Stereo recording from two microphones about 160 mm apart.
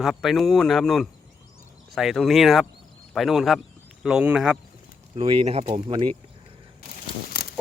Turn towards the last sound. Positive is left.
turn(degrees=70)  # may be behind; listen again after turning